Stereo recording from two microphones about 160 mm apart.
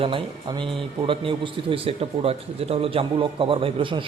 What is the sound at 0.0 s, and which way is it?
A man's voice, 30° right (ahead or behind).